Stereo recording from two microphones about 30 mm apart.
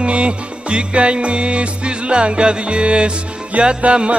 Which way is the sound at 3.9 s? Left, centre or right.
Right.